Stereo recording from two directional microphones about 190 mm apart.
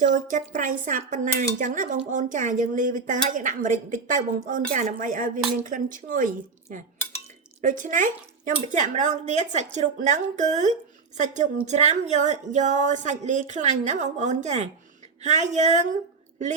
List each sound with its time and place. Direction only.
0.0 s a woman's voice: 40° right (ahead or behind)